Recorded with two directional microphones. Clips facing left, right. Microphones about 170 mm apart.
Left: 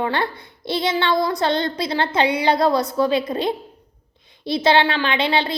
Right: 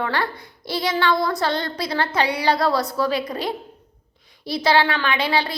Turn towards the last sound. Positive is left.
turn(degrees=25)  # may be behind; listen again after turning